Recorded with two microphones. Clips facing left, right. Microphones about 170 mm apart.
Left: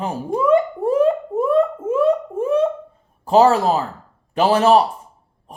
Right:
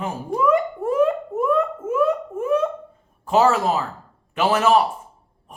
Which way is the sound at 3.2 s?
35° left (ahead or behind).